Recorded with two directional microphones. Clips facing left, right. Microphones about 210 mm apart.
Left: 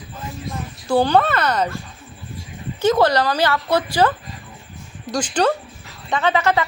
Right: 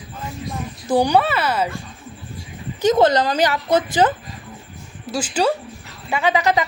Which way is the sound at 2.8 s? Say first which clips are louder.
Right 1 dB; 20° right (ahead or behind).